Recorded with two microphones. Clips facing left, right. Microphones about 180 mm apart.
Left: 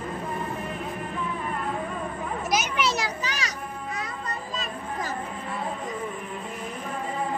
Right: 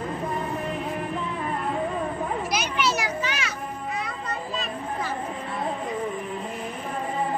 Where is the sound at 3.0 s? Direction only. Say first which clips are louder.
Right 2 dB; 40° left (ahead or behind).